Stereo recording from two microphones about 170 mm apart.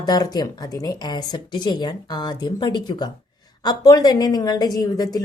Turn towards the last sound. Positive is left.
turn(degrees=20)  # may be behind; listen again after turning